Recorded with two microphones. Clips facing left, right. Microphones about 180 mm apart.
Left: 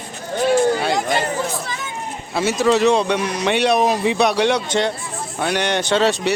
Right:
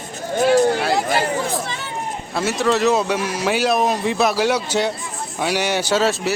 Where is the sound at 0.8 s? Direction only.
5° right (ahead or behind).